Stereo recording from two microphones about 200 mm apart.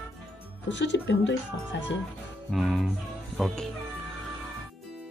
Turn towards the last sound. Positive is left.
turn(degrees=0)  # may be behind; listen again after turning